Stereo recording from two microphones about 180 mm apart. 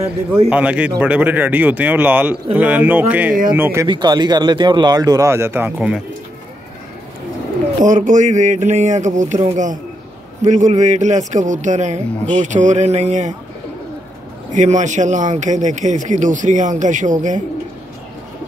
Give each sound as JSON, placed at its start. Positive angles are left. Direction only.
{"t": 0.5, "sound": "speech", "side_deg": -5}
{"t": 3.8, "sound": "speech", "side_deg": -25}
{"t": 7.8, "sound": "a man's voice", "side_deg": -45}
{"t": 14.5, "sound": "speech", "side_deg": -45}